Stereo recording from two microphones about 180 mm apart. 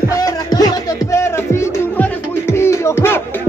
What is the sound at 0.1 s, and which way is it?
Music, 20° left (ahead or behind).